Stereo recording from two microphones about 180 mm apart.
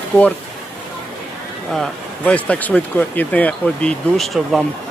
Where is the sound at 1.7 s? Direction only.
5° left (ahead or behind).